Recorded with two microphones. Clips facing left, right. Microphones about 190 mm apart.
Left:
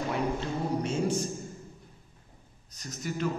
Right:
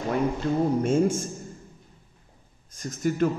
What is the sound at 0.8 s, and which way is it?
Speech, 50° right (ahead or behind).